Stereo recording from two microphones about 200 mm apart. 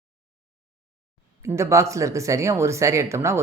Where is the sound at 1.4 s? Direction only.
15° right (ahead or behind).